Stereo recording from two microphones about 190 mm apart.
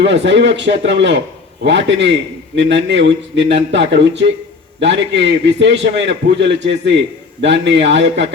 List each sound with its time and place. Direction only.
0.0 s a man's voice: 65° right (ahead or behind)